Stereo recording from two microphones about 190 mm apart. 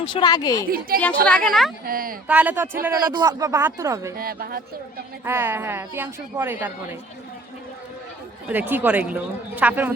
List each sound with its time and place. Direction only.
0.0 s speech: 25° left (ahead or behind)
0.9 s speech: 50° right (ahead or behind)
1.3 s a woman's voice: centre (ahead or behind)
1.9 s speech: 50° right (ahead or behind)
2.2 s a woman's voice: 10° right (ahead or behind)
3.1 s a woman's voice: 20° right (ahead or behind)
4.2 s speech: 50° right (ahead or behind)
5.2 s a woman's voice: 10° right (ahead or behind)
8.4 s a woman's voice: 10° right (ahead or behind)